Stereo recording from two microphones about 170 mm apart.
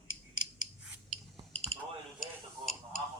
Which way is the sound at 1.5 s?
35° right (ahead or behind).